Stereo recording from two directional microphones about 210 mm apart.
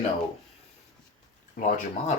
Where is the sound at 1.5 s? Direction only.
40° left (ahead or behind).